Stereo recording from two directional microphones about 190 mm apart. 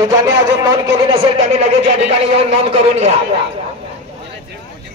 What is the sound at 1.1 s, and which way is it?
A man's voice, 30° right (ahead or behind).